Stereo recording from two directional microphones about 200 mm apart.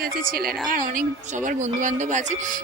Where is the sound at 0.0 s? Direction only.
45° right (ahead or behind).